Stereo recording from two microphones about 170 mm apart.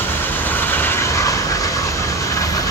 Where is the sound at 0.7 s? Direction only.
10° left (ahead or behind).